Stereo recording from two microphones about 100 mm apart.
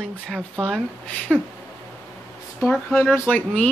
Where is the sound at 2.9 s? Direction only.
25° left (ahead or behind).